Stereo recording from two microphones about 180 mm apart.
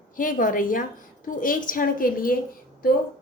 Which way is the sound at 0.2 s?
50° left (ahead or behind).